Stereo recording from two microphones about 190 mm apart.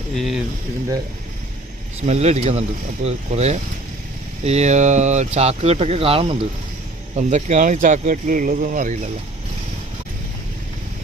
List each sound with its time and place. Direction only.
0.2 s speech: centre (ahead or behind)
2.0 s speech: 35° right (ahead or behind)